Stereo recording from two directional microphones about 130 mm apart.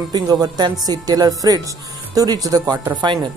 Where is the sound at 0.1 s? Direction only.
30° right (ahead or behind).